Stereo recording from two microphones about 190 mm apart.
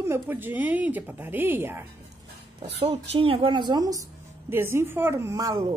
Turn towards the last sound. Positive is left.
turn(degrees=-20)  # may be behind; listen again after turning